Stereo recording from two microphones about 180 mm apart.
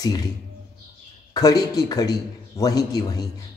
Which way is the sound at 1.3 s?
20° left (ahead or behind).